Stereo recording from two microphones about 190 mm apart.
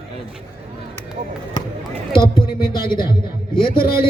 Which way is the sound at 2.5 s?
50° left (ahead or behind).